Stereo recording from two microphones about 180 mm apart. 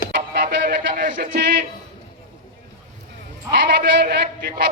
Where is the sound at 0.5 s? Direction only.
60° right (ahead or behind).